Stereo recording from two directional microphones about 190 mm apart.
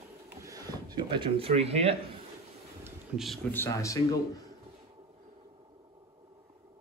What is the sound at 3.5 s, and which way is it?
Speech, 15° left (ahead or behind).